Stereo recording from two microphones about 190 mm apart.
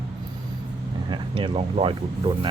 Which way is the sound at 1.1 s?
25° right (ahead or behind).